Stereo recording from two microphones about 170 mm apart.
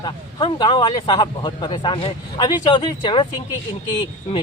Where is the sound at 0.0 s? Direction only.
25° left (ahead or behind).